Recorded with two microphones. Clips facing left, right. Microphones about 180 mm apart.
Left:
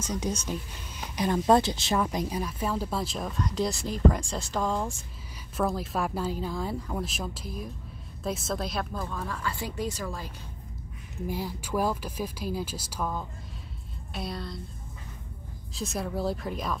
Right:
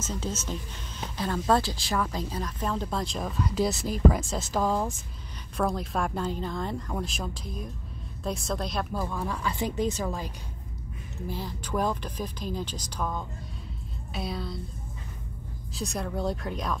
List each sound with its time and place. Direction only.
0.5 s speech: 15° left (ahead or behind)
9.0 s speech: 10° right (ahead or behind)
11.2 s speech: 10° left (ahead or behind)
15.7 s speech: centre (ahead or behind)